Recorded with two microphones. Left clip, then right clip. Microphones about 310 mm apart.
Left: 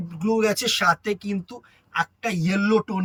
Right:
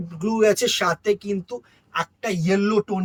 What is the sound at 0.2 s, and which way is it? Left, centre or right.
Speech, centre.